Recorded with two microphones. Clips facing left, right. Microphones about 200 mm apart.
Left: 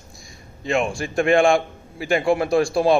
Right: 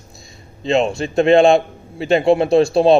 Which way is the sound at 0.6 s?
25° right (ahead or behind).